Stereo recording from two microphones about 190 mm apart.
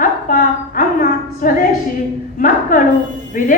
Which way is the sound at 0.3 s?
50° left (ahead or behind).